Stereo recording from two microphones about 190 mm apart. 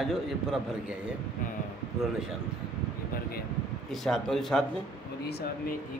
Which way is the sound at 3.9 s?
Centre (ahead or behind).